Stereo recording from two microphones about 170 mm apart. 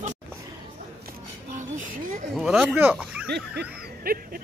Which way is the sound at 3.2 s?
75° right (ahead or behind).